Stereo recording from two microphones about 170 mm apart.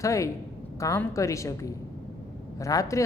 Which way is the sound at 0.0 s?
20° left (ahead or behind).